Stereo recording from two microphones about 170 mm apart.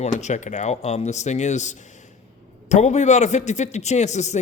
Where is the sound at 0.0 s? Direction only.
45° left (ahead or behind).